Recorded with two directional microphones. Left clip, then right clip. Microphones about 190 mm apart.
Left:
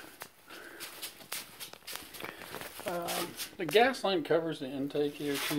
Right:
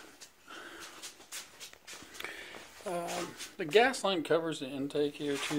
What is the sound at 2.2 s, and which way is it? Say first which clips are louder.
Walk: right 2 dB; 30° right (ahead or behind).